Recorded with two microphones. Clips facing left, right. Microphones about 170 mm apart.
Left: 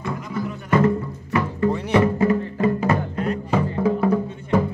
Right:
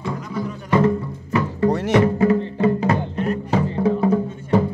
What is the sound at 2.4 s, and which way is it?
Music, 25° right (ahead or behind).